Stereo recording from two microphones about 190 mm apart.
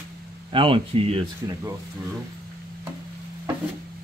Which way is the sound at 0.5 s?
25° right (ahead or behind).